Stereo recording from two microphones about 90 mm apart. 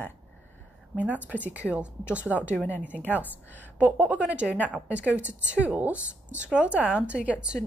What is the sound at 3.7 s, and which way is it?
Speech, 20° right (ahead or behind).